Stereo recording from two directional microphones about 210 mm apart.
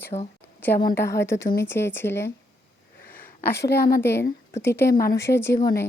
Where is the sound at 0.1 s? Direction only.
30° left (ahead or behind).